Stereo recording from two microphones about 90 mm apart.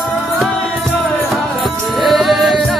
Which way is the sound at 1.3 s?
Centre (ahead or behind).